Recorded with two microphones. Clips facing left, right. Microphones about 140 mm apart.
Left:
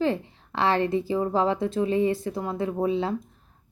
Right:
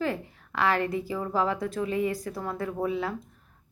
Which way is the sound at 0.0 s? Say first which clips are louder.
Left 5 dB; 25° left (ahead or behind).